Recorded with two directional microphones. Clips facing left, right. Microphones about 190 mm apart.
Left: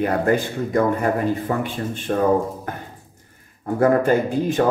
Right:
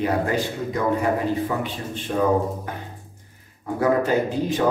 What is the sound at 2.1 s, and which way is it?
Speech, 50° left (ahead or behind).